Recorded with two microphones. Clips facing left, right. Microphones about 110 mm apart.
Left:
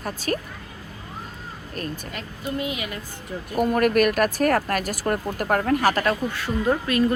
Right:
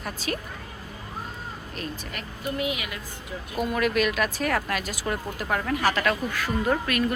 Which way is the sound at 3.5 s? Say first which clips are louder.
Left 5 dB; 50° left (ahead or behind).